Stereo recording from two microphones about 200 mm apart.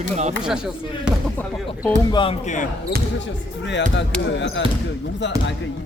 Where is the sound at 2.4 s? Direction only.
40° left (ahead or behind).